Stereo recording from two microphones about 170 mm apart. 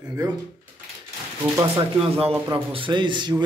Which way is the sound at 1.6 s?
30° right (ahead or behind).